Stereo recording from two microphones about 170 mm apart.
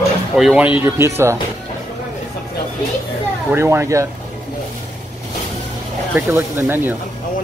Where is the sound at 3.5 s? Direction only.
15° right (ahead or behind).